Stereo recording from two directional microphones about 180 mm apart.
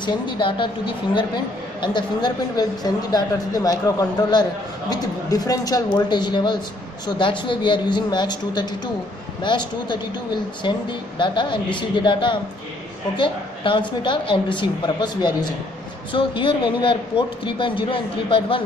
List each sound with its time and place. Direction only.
0.0 s speech: 25° left (ahead or behind)